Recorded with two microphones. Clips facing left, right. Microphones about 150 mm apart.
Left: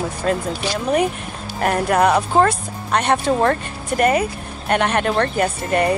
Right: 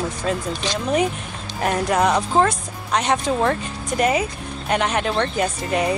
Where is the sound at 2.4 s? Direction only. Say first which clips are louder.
Left 3 dB; 55° left (ahead or behind).